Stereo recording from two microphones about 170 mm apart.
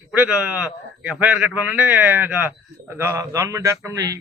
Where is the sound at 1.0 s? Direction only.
5° right (ahead or behind).